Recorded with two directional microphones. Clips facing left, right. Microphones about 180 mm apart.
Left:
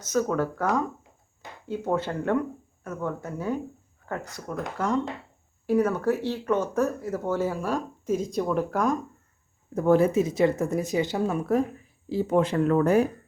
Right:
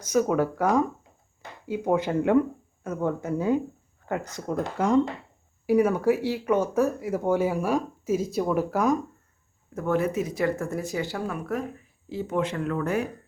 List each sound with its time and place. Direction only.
0.0 s speech: 15° right (ahead or behind)
5.6 s speech: 10° right (ahead or behind)
9.7 s speech: 35° left (ahead or behind)